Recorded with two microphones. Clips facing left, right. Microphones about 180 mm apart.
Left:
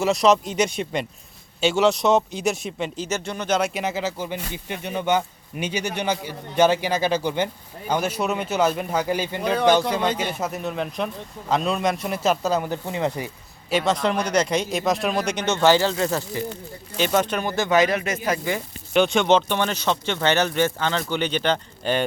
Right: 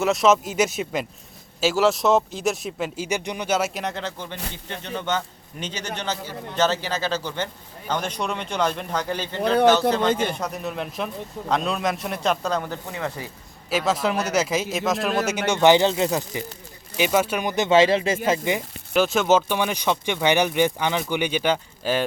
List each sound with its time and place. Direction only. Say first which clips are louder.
0.0 s a man's voice: even; centre (ahead or behind); by 13.2 s 20° left (ahead or behind)
13.7 s a man's voice: left 1 dB; 5° right (ahead or behind); by 18.6 s 25° right (ahead or behind)
18.9 s speech: left 1 dB; centre (ahead or behind)